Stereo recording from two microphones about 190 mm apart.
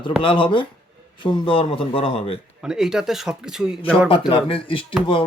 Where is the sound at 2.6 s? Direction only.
5° right (ahead or behind).